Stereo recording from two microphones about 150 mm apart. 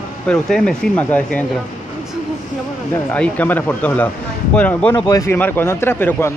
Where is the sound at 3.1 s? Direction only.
10° left (ahead or behind).